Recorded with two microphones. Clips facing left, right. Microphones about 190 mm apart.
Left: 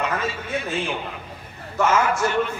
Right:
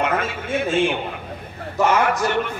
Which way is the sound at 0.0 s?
60° right (ahead or behind).